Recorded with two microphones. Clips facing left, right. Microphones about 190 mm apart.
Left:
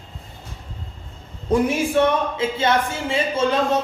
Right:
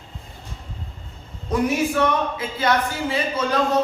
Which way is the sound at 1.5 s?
30° left (ahead or behind).